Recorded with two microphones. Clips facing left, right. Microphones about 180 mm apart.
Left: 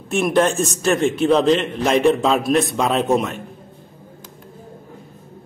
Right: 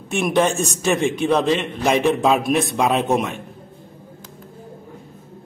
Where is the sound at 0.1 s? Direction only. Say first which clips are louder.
Left 1 dB; centre (ahead or behind).